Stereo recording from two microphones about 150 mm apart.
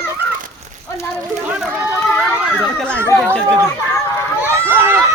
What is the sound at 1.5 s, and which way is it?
Speech, 5° right (ahead or behind).